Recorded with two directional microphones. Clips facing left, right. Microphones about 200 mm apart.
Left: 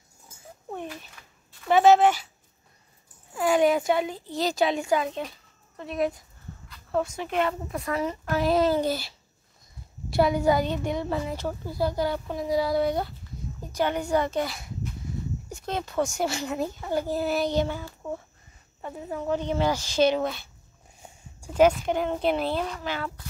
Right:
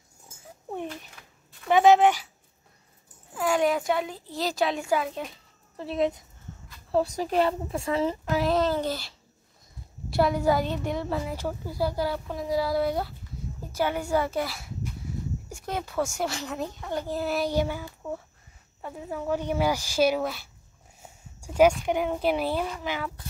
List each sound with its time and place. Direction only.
1.8 s speech: 15° right (ahead or behind)
3.3 s a woman's voice: centre (ahead or behind)
5.8 s speech: 25° right (ahead or behind)
6.9 s speech: 35° right (ahead or behind)
8.4 s speech: 5° left (ahead or behind)
10.0 s a woman's voice: centre (ahead or behind)
16.2 s a woman's voice: centre (ahead or behind)
21.0 s a sound: 10° right (ahead or behind)
21.8 s speech: 10° right (ahead or behind)